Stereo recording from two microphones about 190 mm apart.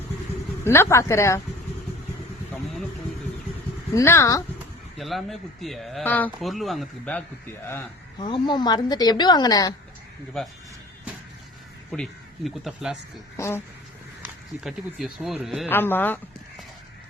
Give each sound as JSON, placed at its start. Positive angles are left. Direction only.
{"t": 0.6, "sound": "speech", "side_deg": 15}
{"t": 3.9, "sound": "speech", "side_deg": 15}
{"t": 4.9, "sound": "speech", "side_deg": 0}
{"t": 8.2, "sound": "a woman's voice", "side_deg": 25}
{"t": 10.3, "sound": "speech", "side_deg": 5}
{"t": 11.9, "sound": "speech", "side_deg": 5}
{"t": 13.3, "sound": "speech", "side_deg": 15}
{"t": 14.6, "sound": "speech", "side_deg": 0}
{"t": 15.7, "sound": "speech", "side_deg": 10}